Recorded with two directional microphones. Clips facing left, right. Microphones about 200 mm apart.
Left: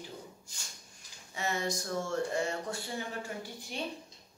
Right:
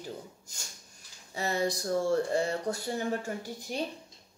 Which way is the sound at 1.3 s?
35° right (ahead or behind).